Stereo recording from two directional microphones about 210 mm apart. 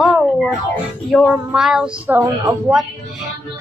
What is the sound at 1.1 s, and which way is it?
Child singing, 5° right (ahead or behind).